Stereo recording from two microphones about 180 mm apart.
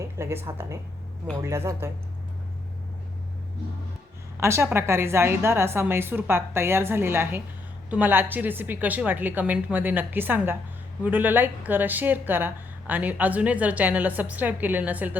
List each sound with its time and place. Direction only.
0.2 s a woman's voice: 15° right (ahead or behind)
4.4 s a woman's voice: 15° right (ahead or behind)